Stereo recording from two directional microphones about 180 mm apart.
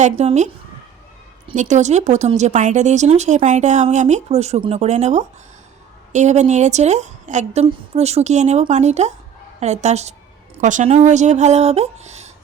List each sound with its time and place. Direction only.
0.0 s speech: 40° right (ahead or behind)
1.5 s speech: 40° right (ahead or behind)